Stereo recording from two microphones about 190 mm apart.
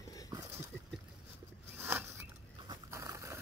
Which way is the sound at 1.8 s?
10° right (ahead or behind).